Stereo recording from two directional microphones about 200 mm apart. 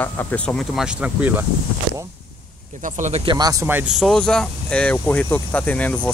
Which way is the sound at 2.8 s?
35° right (ahead or behind).